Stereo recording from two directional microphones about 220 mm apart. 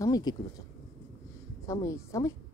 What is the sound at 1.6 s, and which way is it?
Speech, 15° left (ahead or behind).